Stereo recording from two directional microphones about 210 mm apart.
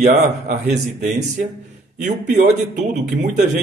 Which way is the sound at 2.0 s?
35° right (ahead or behind).